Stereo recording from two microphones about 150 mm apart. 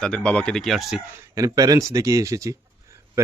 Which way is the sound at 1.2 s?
20° right (ahead or behind).